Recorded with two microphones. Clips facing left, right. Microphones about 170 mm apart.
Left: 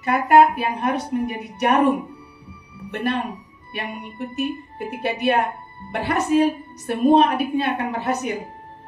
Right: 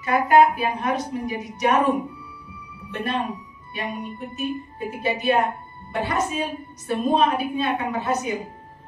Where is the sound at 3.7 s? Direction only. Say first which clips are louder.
Right 1 dB; 65° left (ahead or behind).